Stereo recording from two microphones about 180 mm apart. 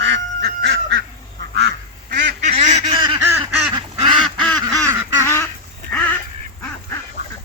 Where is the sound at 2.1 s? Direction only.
55° right (ahead or behind).